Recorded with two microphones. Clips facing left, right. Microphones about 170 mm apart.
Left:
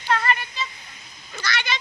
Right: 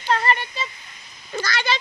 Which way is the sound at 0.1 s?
30° right (ahead or behind).